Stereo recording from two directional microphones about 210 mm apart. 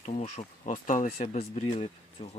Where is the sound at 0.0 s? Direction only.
30° left (ahead or behind).